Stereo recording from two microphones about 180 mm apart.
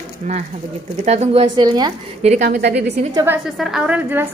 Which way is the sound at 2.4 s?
65° right (ahead or behind).